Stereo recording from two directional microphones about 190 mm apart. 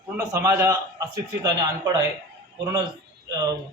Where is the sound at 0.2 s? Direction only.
15° right (ahead or behind).